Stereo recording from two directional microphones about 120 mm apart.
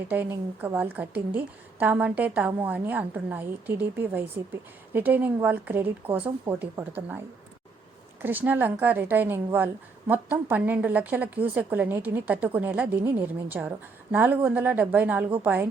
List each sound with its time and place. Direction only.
0.1 s a woman's voice: 15° right (ahead or behind)
8.2 s a woman's voice: 15° right (ahead or behind)